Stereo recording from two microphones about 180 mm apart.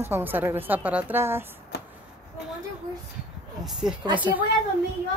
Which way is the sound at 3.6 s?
5° right (ahead or behind).